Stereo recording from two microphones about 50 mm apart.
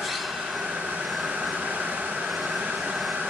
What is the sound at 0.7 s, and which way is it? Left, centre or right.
Vehicle, right.